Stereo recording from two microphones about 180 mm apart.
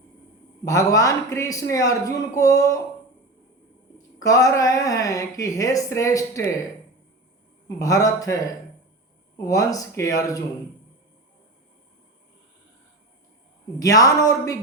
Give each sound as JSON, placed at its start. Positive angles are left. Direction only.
{"t": 0.6, "sound": "a man's voice", "side_deg": 20}
{"t": 3.9, "sound": "a woman's voice", "side_deg": 20}
{"t": 7.8, "sound": "a woman's voice", "side_deg": 20}
{"t": 9.5, "sound": "a woman's voice", "side_deg": 20}
{"t": 13.7, "sound": "a woman's voice", "side_deg": 20}